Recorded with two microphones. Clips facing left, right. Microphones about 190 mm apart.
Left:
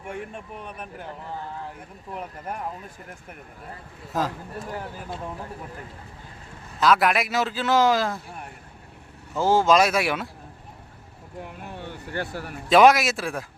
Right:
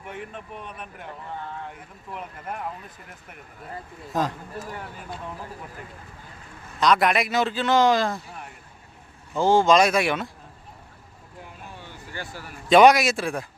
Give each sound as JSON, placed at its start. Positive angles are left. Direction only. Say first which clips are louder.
{"t": 4.1, "sound": "a man's voice", "louder": "right 1 dB", "side_deg": 5}
{"t": 6.7, "sound": "a man's voice", "louder": "even", "side_deg": 5}
{"t": 9.3, "sound": "a man's voice", "louder": "right 1 dB", "side_deg": 5}
{"t": 11.4, "sound": "vehicle", "louder": "left 5 dB", "side_deg": 60}
{"t": 12.6, "sound": "a man's voice", "louder": "right 1 dB", "side_deg": 0}